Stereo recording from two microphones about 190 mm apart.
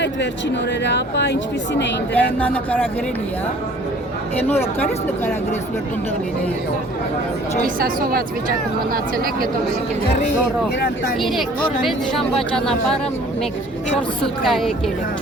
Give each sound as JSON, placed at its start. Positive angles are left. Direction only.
{"t": 0.9, "sound": "speech", "side_deg": 65}
{"t": 2.1, "sound": "speech", "side_deg": 10}
{"t": 7.8, "sound": "speech", "side_deg": -50}
{"t": 11.2, "sound": "speech", "side_deg": 0}
{"t": 14.4, "sound": "speech", "side_deg": 0}